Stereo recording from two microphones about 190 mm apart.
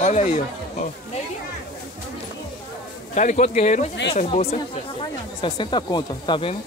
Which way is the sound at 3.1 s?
40° left (ahead or behind).